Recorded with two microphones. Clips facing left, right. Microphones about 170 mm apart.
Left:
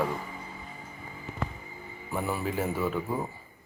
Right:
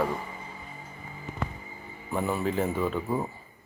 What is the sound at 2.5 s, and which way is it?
Speech, 10° left (ahead or behind).